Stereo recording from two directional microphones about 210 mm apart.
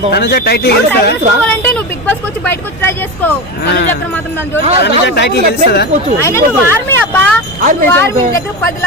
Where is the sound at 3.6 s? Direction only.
50° left (ahead or behind).